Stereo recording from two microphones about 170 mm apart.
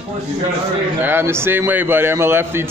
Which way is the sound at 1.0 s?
15° right (ahead or behind).